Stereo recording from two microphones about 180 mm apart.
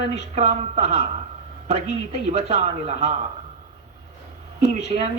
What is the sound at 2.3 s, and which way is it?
Speech, 40° right (ahead or behind).